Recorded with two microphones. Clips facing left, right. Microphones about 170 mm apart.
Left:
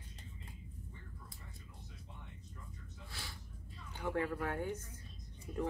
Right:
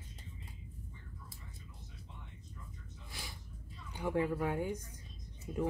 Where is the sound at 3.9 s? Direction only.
15° right (ahead or behind).